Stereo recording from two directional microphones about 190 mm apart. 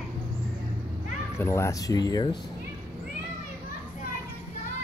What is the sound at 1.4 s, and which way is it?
Speech, 15° left (ahead or behind).